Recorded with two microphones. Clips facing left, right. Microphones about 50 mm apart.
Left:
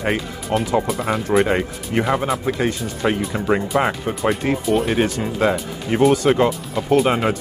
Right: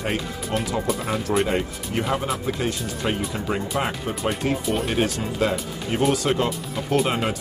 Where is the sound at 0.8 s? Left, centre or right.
Centre.